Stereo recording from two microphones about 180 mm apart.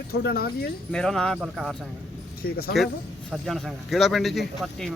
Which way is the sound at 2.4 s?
55° left (ahead or behind).